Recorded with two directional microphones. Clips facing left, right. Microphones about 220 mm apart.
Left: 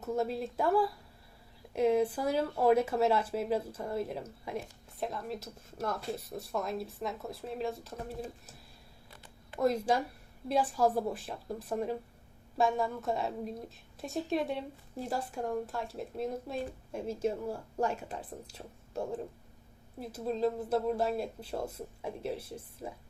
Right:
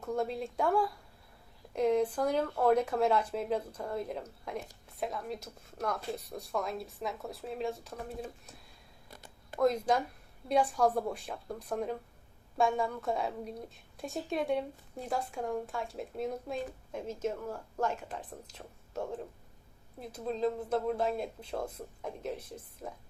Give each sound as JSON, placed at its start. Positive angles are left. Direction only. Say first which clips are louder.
{"t": 0.0, "sound": "speech", "louder": "left 1 dB", "side_deg": 5}
{"t": 9.0, "sound": "a sound", "louder": "right 4 dB", "side_deg": -45}
{"t": 9.6, "sound": "speech", "louder": "right 1 dB", "side_deg": 10}
{"t": 20.0, "sound": "speech", "louder": "left 1 dB", "side_deg": 5}